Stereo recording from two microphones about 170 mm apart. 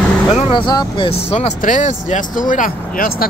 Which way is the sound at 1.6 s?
50° left (ahead or behind).